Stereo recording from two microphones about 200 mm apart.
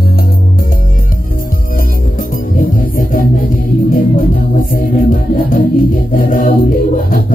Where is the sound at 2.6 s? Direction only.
45° left (ahead or behind).